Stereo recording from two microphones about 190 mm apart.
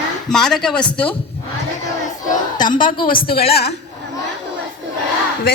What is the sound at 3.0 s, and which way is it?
Speech, 50° left (ahead or behind).